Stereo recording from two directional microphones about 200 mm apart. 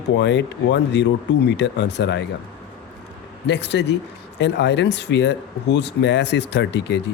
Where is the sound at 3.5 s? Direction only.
60° left (ahead or behind).